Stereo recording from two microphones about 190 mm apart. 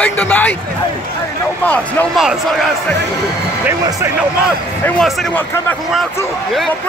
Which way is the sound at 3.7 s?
15° right (ahead or behind).